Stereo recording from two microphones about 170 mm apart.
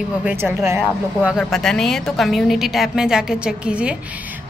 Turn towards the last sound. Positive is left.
turn(degrees=-5)  # may be behind; listen again after turning